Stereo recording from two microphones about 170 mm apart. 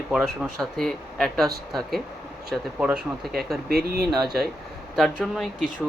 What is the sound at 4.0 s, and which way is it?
Speech, centre (ahead or behind).